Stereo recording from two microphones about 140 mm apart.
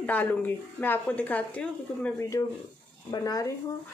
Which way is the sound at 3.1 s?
25° left (ahead or behind).